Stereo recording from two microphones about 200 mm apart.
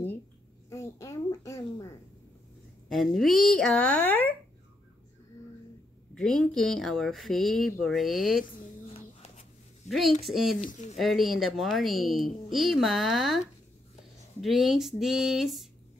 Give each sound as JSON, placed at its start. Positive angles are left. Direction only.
{"t": 0.7, "sound": "a sound", "side_deg": 15}
{"t": 2.9, "sound": "speech", "side_deg": 0}
{"t": 6.1, "sound": "speech", "side_deg": 0}
{"t": 8.9, "sound": "a sound", "side_deg": 30}
{"t": 9.8, "sound": "a woman's voice", "side_deg": 0}
{"t": 10.6, "sound": "speech", "side_deg": 35}
{"t": 11.0, "sound": "speech", "side_deg": 0}